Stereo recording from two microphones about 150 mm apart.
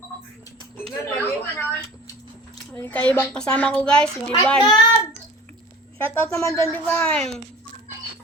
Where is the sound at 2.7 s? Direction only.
10° left (ahead or behind).